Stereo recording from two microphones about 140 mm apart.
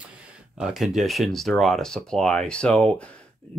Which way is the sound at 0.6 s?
5° right (ahead or behind).